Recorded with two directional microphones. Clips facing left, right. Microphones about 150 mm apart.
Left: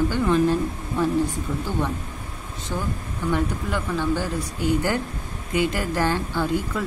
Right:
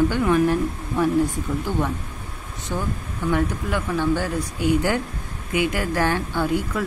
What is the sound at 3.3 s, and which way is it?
Speech, 10° right (ahead or behind).